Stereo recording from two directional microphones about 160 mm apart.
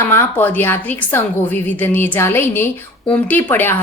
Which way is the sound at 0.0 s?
15° left (ahead or behind).